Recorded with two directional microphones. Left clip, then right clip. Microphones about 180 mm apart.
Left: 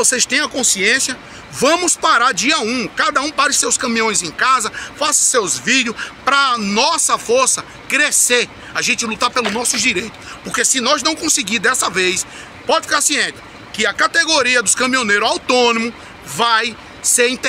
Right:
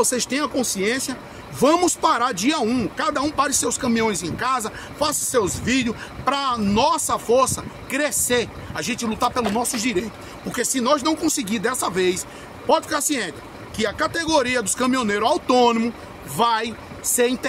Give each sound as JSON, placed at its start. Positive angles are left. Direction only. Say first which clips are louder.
{"t": 0.0, "sound": "speech", "louder": "left 6 dB", "side_deg": -15}